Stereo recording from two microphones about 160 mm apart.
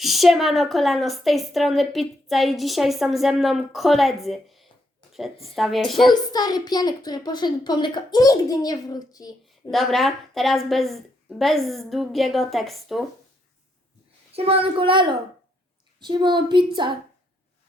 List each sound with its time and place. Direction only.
0.0 s a woman's voice: centre (ahead or behind)
6.3 s a child's voice: 25° left (ahead or behind)
9.5 s a woman's voice: centre (ahead or behind)
14.3 s a child's voice: 35° right (ahead or behind)